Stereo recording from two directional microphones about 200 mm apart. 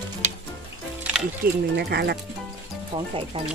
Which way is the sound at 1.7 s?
55° right (ahead or behind).